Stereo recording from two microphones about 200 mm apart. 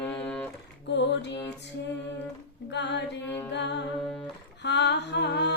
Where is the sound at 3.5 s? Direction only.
60° left (ahead or behind).